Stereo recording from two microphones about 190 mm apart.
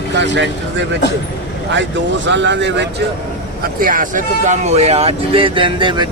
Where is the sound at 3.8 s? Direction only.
45° right (ahead or behind).